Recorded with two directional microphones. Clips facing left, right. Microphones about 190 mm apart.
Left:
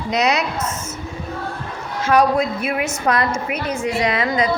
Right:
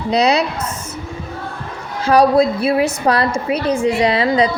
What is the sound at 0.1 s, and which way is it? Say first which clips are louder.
Speech: right 4 dB; 30° right (ahead or behind).